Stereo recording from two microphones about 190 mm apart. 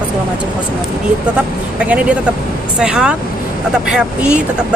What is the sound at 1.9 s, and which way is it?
Speech, 5° right (ahead or behind).